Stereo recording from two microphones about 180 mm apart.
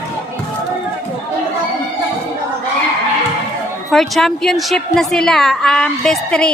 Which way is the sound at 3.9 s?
Centre (ahead or behind).